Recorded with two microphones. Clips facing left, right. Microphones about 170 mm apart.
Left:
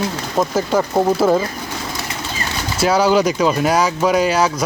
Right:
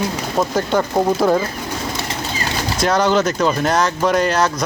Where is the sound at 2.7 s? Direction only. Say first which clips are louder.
Left 2 dB; 5° left (ahead or behind).